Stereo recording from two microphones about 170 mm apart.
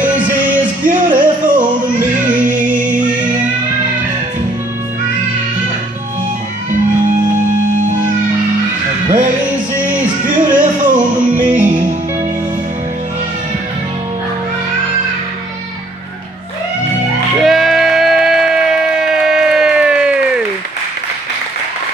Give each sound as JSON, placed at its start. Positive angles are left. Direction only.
{"t": 0.0, "sound": "music", "side_deg": -10}
{"t": 0.8, "sound": "music", "side_deg": -50}
{"t": 2.2, "sound": "female singing", "side_deg": -50}
{"t": 9.8, "sound": "music", "side_deg": -50}
{"t": 17.4, "sound": "a sound", "side_deg": 0}